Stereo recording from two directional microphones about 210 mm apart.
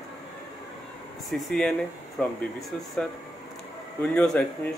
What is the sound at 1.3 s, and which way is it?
Speech, centre (ahead or behind).